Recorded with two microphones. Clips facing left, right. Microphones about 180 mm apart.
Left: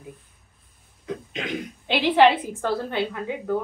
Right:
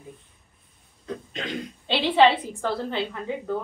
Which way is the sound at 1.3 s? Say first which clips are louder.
Left 2 dB; 15° left (ahead or behind).